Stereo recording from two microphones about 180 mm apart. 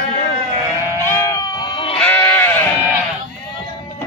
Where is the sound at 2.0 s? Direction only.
10° left (ahead or behind).